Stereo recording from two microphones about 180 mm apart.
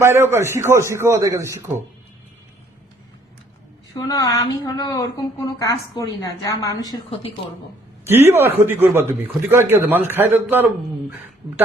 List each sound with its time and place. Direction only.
0.0 s a man's voice: 15° right (ahead or behind)
3.9 s a woman's voice: 20° left (ahead or behind)
8.0 s a man's voice: 15° right (ahead or behind)